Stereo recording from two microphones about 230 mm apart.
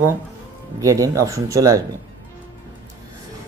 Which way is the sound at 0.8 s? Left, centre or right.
Centre.